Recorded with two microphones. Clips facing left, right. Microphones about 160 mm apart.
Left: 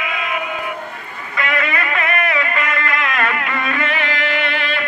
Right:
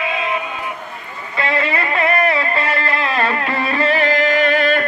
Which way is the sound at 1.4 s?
30° right (ahead or behind).